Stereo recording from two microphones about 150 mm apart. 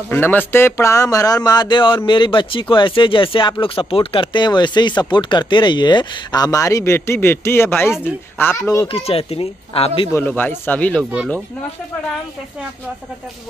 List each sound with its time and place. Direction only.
0.1 s speech: 15° left (ahead or behind)
8.8 s speech: 40° left (ahead or behind)
10.1 s speech: 10° left (ahead or behind)